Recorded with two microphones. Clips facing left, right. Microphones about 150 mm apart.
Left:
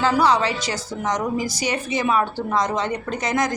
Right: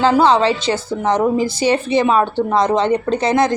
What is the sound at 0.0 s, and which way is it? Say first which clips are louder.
A woman's voice: right 6 dB; 25° right (ahead or behind).